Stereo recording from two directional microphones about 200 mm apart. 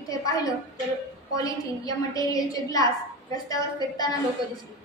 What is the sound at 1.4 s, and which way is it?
A woman's voice, 20° left (ahead or behind).